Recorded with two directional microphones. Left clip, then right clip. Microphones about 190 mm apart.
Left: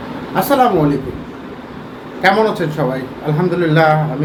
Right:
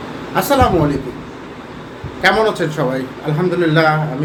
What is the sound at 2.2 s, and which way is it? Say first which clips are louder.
A woman's voice: left 1 dB; 15° right (ahead or behind).